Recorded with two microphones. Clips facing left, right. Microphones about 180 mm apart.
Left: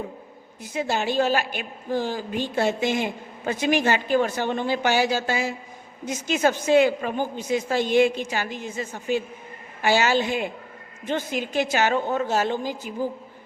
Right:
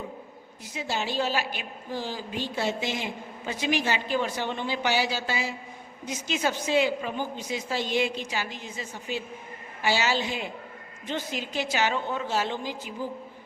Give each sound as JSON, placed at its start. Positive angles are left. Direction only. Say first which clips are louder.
{"t": 0.6, "sound": "a woman's voice", "louder": "left 6 dB", "side_deg": 50}